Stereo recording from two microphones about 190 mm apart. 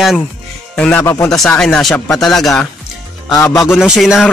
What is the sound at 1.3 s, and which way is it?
A man's voice, 5° left (ahead or behind).